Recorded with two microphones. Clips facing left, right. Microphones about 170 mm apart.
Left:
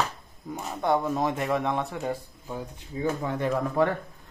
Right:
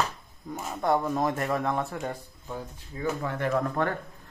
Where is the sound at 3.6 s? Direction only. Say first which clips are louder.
Left 4 dB; 5° left (ahead or behind).